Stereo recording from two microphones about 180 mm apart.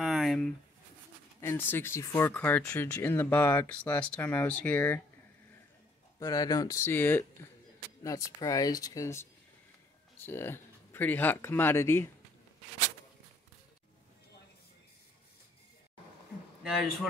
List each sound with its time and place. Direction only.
0.0 s a sound: centre (ahead or behind)
1.4 s speech: 10° left (ahead or behind)
6.1 s speech: 20° left (ahead or behind)
16.6 s speech: centre (ahead or behind)